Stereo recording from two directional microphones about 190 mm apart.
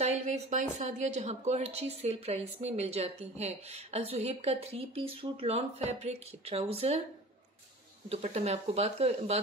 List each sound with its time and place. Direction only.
0.0 s a woman's voice: 35° right (ahead or behind)
8.1 s a woman's voice: 35° right (ahead or behind)